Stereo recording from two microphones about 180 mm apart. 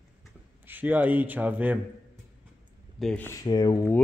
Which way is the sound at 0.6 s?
10° right (ahead or behind).